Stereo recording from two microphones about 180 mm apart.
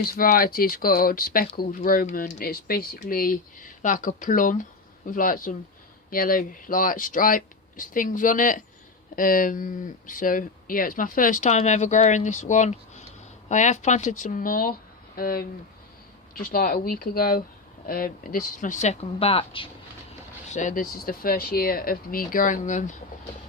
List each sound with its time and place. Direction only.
0.0 s speech: 55° left (ahead or behind); by 19.6 s 30° left (ahead or behind)
20.5 s speech: 45° left (ahead or behind)